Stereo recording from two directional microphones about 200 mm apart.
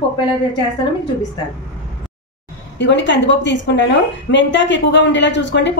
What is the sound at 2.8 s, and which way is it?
Speech, 60° left (ahead or behind).